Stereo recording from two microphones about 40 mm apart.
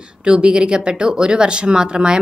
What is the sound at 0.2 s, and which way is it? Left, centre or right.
Speech, right.